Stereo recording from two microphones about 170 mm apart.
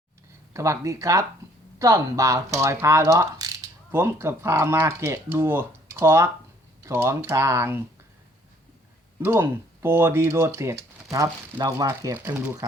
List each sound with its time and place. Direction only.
0.5 s speech: 15° right (ahead or behind)
9.2 s speech: 10° right (ahead or behind)